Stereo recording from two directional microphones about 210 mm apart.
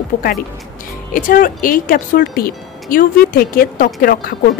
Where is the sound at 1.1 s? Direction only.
40° left (ahead or behind).